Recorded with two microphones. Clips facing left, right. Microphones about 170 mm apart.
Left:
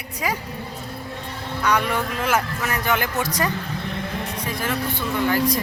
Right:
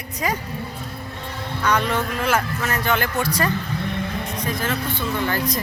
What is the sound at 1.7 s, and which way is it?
A man's voice, 10° left (ahead or behind).